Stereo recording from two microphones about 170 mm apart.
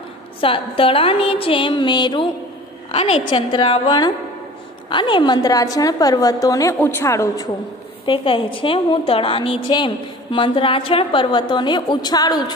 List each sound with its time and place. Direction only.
0.4 s a woman's voice: 30° left (ahead or behind)
2.9 s a woman's voice: 40° left (ahead or behind); by 7.4 s 15° left (ahead or behind)
8.0 s a woman's voice: 30° left (ahead or behind)